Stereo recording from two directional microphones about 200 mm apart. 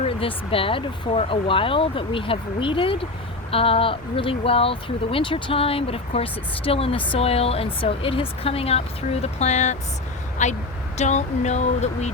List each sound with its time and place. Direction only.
0.0 s speech: 30° left (ahead or behind)